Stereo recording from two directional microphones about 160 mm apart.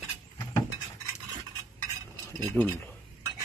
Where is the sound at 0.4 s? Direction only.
25° left (ahead or behind).